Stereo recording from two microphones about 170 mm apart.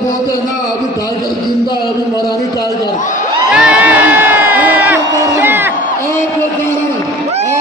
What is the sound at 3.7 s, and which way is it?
Crowd, 10° right (ahead or behind).